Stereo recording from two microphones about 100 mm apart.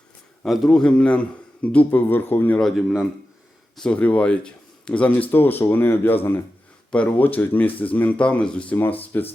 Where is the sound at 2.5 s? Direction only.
5° left (ahead or behind).